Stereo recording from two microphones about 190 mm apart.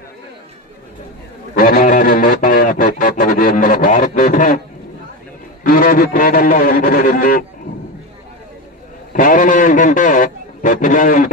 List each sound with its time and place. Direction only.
1.5 s music: 45° left (ahead or behind)
5.6 s a man's voice: 45° left (ahead or behind)
9.1 s a sound: 45° left (ahead or behind)